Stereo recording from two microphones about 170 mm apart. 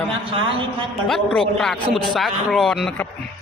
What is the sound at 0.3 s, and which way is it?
Speech, 30° right (ahead or behind).